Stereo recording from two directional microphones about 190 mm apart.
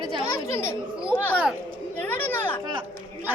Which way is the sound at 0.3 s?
15° left (ahead or behind).